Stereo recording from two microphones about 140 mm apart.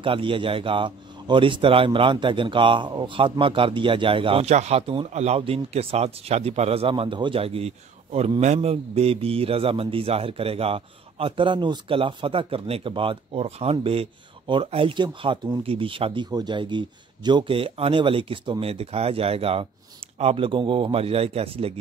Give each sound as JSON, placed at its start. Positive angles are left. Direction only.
{"t": 0.0, "sound": "a man's voice", "side_deg": -40}